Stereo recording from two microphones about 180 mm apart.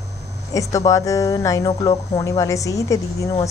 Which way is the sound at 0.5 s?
20° left (ahead or behind).